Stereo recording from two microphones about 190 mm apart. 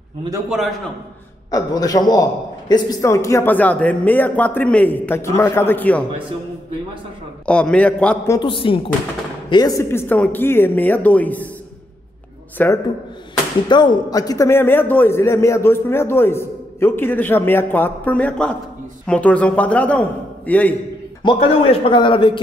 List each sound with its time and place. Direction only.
1.5 s a man's voice: 20° left (ahead or behind)
7.4 s a man's voice: 5° left (ahead or behind)
8.4 s a man's voice: 25° left (ahead or behind); by 11.4 s 10° left (ahead or behind)
12.6 s a man's voice: 10° left (ahead or behind)
13.7 s a man's voice: 25° left (ahead or behind); by 20.7 s 10° left (ahead or behind)
21.2 s speech: 25° left (ahead or behind)